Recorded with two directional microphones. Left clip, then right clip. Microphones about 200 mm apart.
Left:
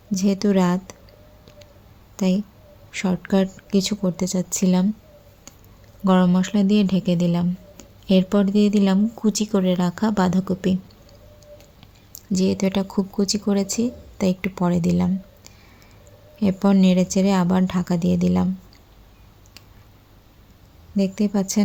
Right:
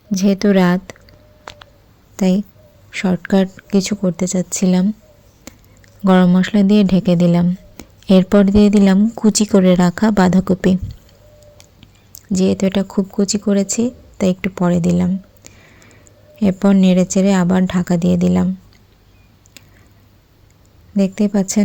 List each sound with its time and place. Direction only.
0.1 s a woman's voice: 15° right (ahead or behind)
2.1 s speech: 25° right (ahead or behind)
6.1 s speech: 25° right (ahead or behind)
12.1 s speech: 20° right (ahead or behind)
20.9 s speech: 25° right (ahead or behind)